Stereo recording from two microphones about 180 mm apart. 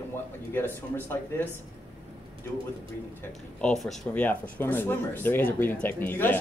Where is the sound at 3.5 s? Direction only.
5° left (ahead or behind).